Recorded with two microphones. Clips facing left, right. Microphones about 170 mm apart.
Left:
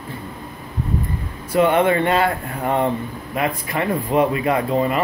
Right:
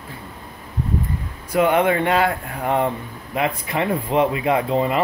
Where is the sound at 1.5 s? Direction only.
10° right (ahead or behind).